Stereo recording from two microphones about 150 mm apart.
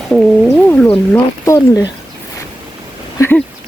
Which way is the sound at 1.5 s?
25° left (ahead or behind).